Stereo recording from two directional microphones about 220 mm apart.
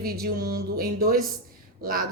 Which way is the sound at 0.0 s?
45° right (ahead or behind).